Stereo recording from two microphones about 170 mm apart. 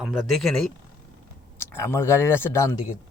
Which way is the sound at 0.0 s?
Centre (ahead or behind).